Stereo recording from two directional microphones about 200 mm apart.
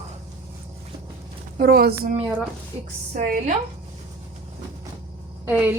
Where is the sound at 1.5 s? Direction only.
50° right (ahead or behind).